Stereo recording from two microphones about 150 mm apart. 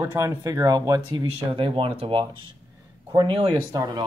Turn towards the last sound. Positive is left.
turn(degrees=-30)  # may be behind; listen again after turning